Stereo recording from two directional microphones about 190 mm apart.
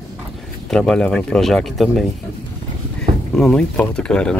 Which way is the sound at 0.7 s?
5° left (ahead or behind).